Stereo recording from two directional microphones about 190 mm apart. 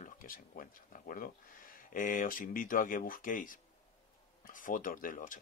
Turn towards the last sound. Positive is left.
turn(degrees=45)  # may be behind; listen again after turning